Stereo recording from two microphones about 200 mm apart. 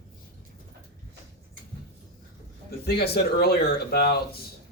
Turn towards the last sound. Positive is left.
turn(degrees=50)  # may be behind; listen again after turning